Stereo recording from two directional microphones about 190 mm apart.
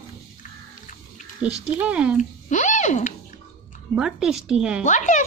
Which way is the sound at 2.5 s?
40° left (ahead or behind).